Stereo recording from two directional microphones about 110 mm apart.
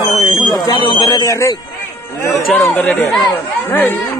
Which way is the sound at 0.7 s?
45° left (ahead or behind).